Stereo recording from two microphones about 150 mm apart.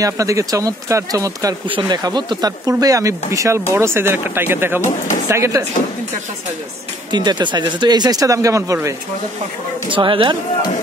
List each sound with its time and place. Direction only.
0.0 s speech: 20° right (ahead or behind)
4.8 s speech: 55° left (ahead or behind)
5.3 s speech: 20° right (ahead or behind)
7.1 s speech: 30° right (ahead or behind)
9.8 s speech: 35° right (ahead or behind)